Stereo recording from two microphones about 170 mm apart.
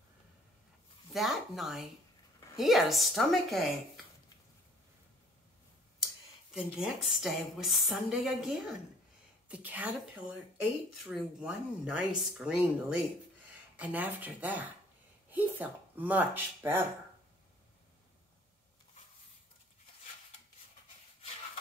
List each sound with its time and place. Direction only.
1.1 s a woman's voice: centre (ahead or behind)
6.5 s a woman's voice: centre (ahead or behind)
11.1 s a woman's voice: 5° right (ahead or behind)